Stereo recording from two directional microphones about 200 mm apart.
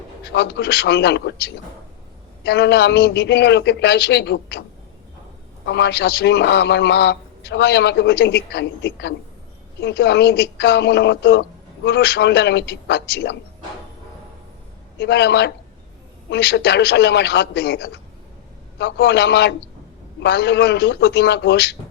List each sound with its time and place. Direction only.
0.3 s a man's voice: 55° left (ahead or behind)
5.6 s a man's voice: 55° left (ahead or behind)
14.9 s a man's voice: 60° left (ahead or behind)